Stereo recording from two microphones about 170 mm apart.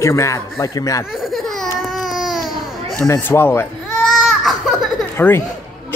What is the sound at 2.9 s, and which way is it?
Speech, 15° left (ahead or behind).